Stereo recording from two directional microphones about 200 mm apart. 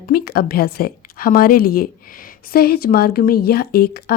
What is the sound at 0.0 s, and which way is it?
A woman's voice, 50° left (ahead or behind).